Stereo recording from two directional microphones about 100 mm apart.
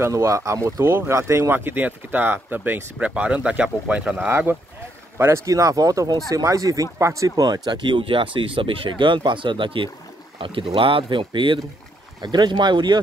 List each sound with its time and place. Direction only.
0.0 s speech: 30° right (ahead or behind); by 4.3 s 10° right (ahead or behind)
4.3 s speech: 20° right (ahead or behind); by 13.0 s 45° right (ahead or behind)